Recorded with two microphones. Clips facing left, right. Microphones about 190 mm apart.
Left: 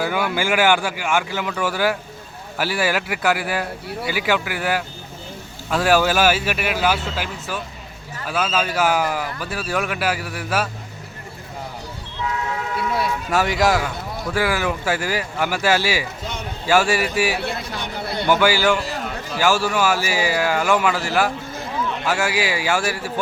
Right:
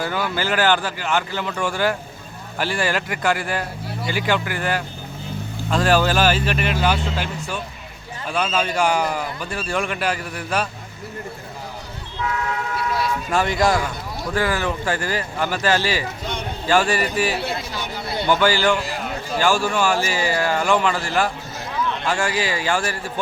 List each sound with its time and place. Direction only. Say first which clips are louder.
0.0 s a man's voice: left 2 dB; 10° left (ahead or behind)
13.3 s speech: left 1 dB; 5° left (ahead or behind)